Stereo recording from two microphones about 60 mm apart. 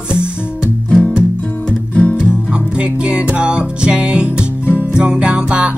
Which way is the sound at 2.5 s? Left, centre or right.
Centre.